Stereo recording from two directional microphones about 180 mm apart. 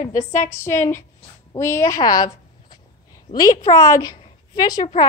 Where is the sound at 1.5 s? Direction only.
15° left (ahead or behind).